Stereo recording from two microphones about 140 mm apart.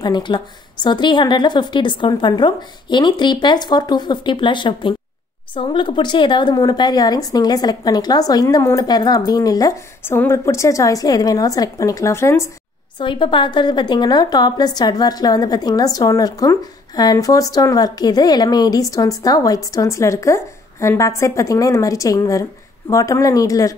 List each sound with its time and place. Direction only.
0.0 s a woman's voice: 30° left (ahead or behind)
13.0 s a woman's voice: 35° left (ahead or behind)